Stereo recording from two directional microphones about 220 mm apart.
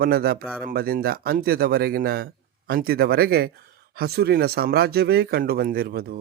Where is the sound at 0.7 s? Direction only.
40° right (ahead or behind).